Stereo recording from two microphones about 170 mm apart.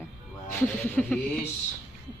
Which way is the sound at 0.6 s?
5° left (ahead or behind).